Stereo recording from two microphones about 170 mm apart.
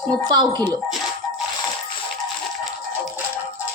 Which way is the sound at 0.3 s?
25° right (ahead or behind).